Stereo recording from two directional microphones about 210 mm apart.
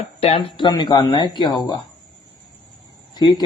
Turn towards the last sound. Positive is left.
turn(degrees=20)  # may be behind; listen again after turning